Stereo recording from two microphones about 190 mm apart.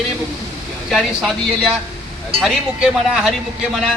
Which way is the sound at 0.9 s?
Centre (ahead or behind).